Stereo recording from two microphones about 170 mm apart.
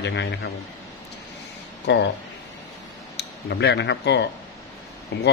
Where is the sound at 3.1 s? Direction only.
85° left.